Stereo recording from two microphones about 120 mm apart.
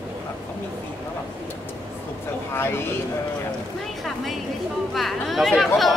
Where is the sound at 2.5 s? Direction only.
20° left (ahead or behind).